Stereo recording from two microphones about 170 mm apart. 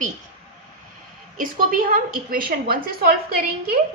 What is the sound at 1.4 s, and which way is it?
A woman's voice, 55° right (ahead or behind).